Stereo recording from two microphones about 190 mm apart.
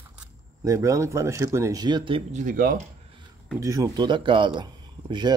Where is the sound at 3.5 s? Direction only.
15° right (ahead or behind).